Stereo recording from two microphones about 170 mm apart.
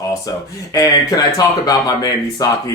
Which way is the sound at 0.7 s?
20° left (ahead or behind).